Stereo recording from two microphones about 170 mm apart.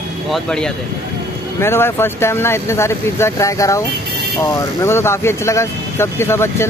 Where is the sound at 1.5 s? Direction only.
15° left (ahead or behind).